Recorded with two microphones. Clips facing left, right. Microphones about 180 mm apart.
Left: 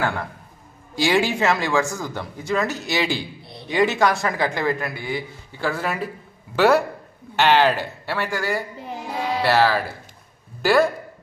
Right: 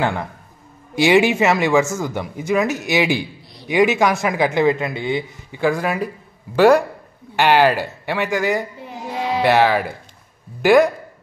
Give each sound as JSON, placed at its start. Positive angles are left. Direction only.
{"t": 0.9, "sound": "speech", "side_deg": -20}